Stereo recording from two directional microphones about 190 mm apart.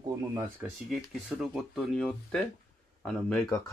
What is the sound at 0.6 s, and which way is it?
Speech, centre (ahead or behind).